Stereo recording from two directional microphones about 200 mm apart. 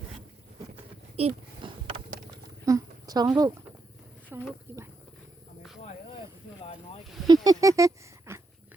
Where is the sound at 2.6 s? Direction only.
15° right (ahead or behind).